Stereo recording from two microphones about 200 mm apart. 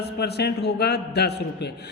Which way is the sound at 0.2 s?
55° left (ahead or behind).